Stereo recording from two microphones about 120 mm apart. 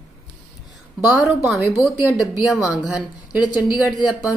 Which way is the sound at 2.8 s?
10° right (ahead or behind).